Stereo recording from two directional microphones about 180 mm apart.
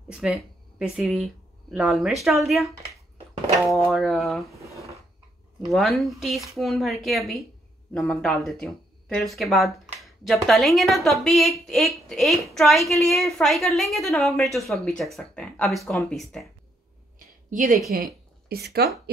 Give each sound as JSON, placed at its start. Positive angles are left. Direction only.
{"t": 0.1, "sound": "a sound", "side_deg": -5}
{"t": 0.9, "sound": "speech", "side_deg": -5}
{"t": 3.6, "sound": "a sound", "side_deg": 0}
{"t": 5.7, "sound": "speech", "side_deg": 0}
{"t": 17.5, "sound": "speech", "side_deg": -45}
{"t": 17.9, "sound": "speech", "side_deg": -55}